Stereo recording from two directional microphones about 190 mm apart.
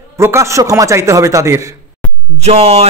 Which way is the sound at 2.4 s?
35° right (ahead or behind).